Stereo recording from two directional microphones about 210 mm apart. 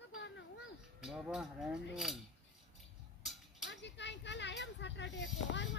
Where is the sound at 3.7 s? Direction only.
55° left (ahead or behind).